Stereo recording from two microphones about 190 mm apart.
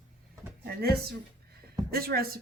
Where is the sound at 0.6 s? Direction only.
55° right (ahead or behind).